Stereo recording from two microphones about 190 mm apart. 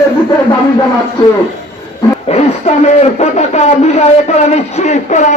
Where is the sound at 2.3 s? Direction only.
35° left (ahead or behind).